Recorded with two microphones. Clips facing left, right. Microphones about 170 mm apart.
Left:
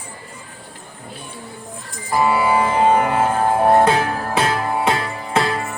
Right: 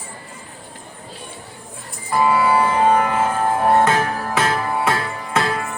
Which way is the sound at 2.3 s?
25° left (ahead or behind).